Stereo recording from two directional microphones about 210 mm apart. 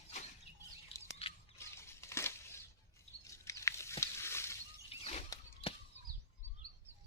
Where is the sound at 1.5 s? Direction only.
10° left (ahead or behind).